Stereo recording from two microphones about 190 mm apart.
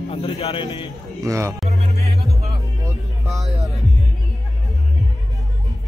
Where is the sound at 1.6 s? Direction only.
35° right (ahead or behind).